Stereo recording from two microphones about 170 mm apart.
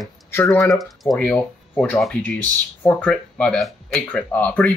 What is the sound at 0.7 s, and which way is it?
Speech, centre (ahead or behind).